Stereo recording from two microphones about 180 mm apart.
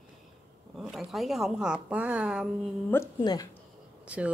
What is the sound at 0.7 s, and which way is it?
Speech, centre (ahead or behind).